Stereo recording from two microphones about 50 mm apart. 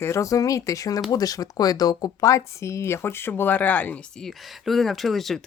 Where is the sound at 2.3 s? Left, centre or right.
Left.